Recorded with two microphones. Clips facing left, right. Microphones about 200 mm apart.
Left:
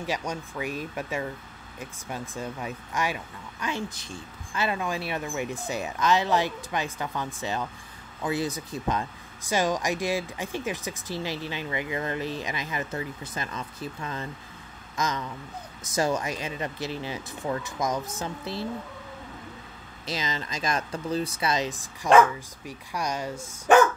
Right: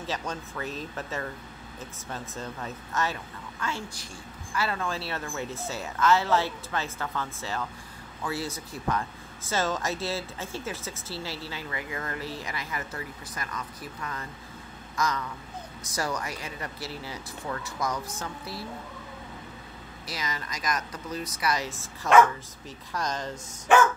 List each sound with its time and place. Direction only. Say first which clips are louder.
0.0 s speech: left 2 dB; 10° left (ahead or behind)
20.1 s speech: left 4 dB; 25° left (ahead or behind)